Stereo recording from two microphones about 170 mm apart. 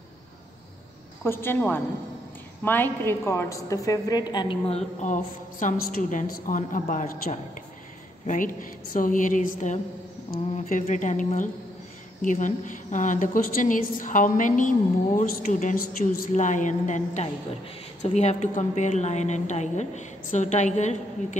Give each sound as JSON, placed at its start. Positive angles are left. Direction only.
{"t": 1.2, "sound": "a woman's voice", "side_deg": 15}